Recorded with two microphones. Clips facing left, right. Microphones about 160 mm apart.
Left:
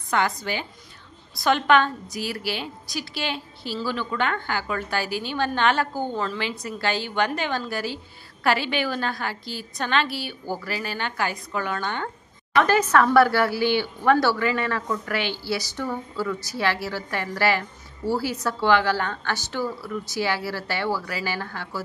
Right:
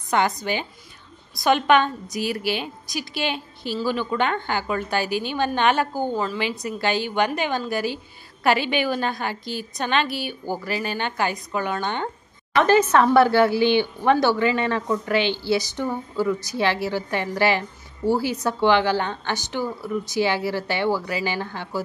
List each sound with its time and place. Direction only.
0.1 s a woman's voice: 20° right (ahead or behind)